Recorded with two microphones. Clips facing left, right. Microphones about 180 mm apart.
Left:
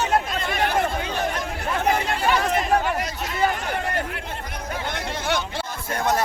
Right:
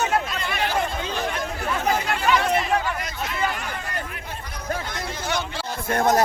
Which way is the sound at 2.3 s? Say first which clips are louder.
Even; 45° left (ahead or behind).